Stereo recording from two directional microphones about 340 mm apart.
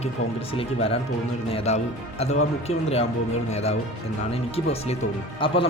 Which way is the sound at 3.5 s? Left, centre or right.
Centre.